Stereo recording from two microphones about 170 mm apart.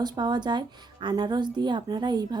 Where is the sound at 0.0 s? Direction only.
25° right (ahead or behind).